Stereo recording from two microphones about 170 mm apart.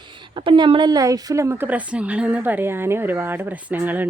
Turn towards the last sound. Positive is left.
turn(degrees=-10)  # may be behind; listen again after turning